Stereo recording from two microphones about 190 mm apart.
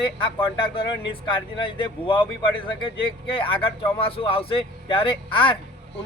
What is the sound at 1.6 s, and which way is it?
Speech, 25° left (ahead or behind).